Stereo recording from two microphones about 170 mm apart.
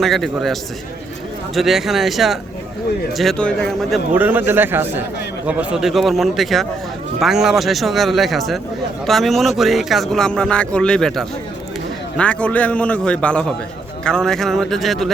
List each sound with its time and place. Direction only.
0.0 s speech: centre (ahead or behind)
4.1 s a man's voice: 10° right (ahead or behind)